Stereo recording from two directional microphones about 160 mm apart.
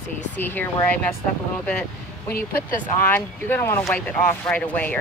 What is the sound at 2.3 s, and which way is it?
Speech, 65° left (ahead or behind).